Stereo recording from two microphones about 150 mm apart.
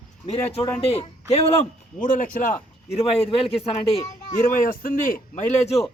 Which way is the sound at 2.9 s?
45° left (ahead or behind).